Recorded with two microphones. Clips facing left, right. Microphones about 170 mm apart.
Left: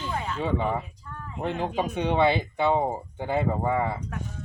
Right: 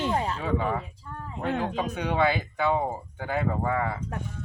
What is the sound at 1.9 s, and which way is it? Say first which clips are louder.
Speech: left 3 dB; 25° left (ahead or behind).